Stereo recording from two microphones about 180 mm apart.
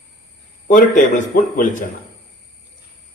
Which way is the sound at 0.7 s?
45° left (ahead or behind).